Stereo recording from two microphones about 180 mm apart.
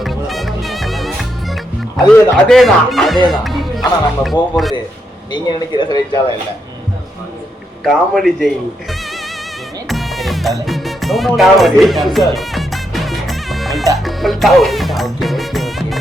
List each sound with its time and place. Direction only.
0.0 s music: centre (ahead or behind)
3.2 s speech: centre (ahead or behind)
5.3 s speech: 25° left (ahead or behind)
7.9 s speech: centre (ahead or behind)
9.9 s music: centre (ahead or behind)